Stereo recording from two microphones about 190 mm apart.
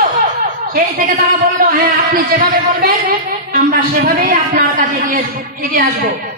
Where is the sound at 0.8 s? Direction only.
55° right (ahead or behind).